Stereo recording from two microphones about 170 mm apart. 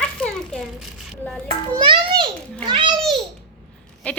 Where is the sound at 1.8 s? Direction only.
30° right (ahead or behind).